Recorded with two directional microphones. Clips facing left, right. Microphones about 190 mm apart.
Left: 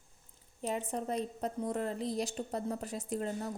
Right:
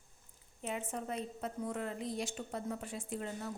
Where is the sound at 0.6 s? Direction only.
35° left (ahead or behind).